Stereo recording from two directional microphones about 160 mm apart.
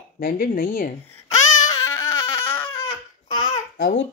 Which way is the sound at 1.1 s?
20° left (ahead or behind).